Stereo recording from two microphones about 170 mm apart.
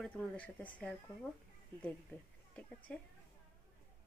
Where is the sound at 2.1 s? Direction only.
10° left (ahead or behind).